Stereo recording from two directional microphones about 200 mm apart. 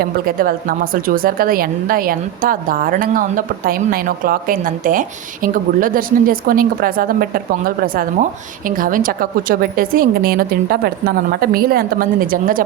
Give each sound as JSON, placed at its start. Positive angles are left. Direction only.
{"t": 0.0, "sound": "a woman's voice", "side_deg": -45}